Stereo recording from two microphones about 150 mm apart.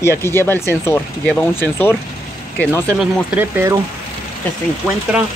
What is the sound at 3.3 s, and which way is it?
Speech, 15° right (ahead or behind).